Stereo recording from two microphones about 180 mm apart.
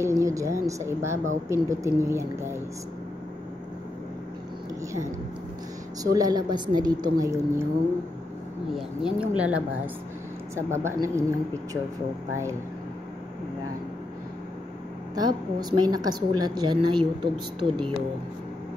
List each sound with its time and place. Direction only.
0.0 s a woman's voice: 15° right (ahead or behind)
6.1 s a woman's voice: 20° right (ahead or behind)
8.7 s a woman's voice: 5° right (ahead or behind)
15.1 s a woman's voice: 20° right (ahead or behind)